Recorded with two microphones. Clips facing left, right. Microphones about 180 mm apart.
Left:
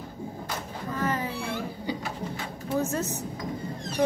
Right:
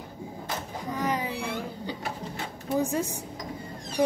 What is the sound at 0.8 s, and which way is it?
Cat, 15° right (ahead or behind).